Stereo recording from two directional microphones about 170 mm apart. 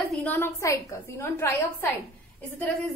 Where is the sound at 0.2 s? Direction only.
10° left (ahead or behind).